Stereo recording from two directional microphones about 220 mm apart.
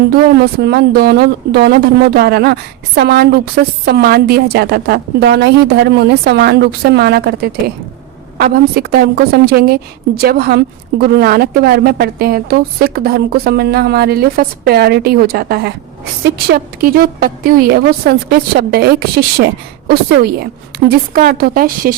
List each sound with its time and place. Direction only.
0.6 s a woman's voice: 45° right (ahead or behind)